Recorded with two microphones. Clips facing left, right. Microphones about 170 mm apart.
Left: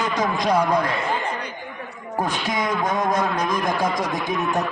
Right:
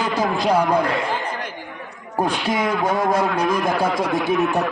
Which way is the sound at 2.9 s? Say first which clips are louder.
Right 3 dB; 30° right (ahead or behind).